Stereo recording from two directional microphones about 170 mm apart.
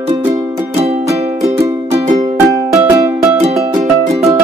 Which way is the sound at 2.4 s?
20° right (ahead or behind).